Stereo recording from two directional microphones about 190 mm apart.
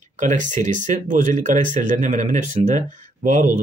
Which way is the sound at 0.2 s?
40° right (ahead or behind).